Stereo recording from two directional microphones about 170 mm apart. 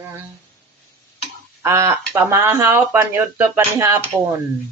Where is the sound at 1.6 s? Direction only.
15° right (ahead or behind).